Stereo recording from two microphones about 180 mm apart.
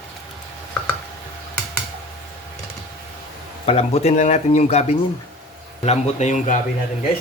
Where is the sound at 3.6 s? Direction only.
35° left (ahead or behind).